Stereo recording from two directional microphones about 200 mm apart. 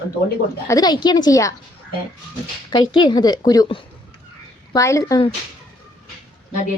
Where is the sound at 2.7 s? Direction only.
20° left (ahead or behind).